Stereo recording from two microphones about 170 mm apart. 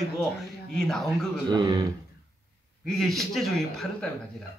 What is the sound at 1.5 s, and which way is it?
Speech, 25° right (ahead or behind).